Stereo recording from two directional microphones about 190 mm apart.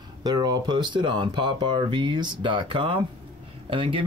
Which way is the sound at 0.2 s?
20° right (ahead or behind).